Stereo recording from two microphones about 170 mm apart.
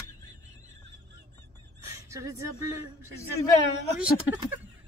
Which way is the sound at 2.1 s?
15° right (ahead or behind).